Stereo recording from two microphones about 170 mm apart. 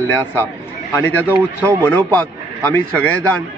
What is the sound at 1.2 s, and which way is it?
Speech, 15° right (ahead or behind).